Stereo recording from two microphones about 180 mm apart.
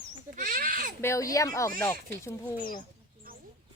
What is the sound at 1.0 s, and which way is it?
Speech, 15° left (ahead or behind).